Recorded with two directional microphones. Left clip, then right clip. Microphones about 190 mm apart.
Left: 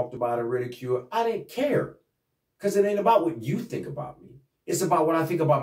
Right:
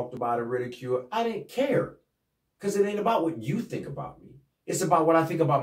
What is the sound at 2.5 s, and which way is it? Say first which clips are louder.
Speech: left 3 dB; 15° left (ahead or behind).